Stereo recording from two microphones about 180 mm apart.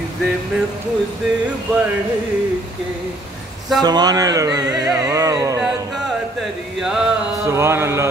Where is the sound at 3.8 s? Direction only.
20° right (ahead or behind).